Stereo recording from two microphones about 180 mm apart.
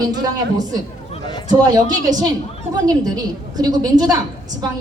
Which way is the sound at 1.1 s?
30° left (ahead or behind).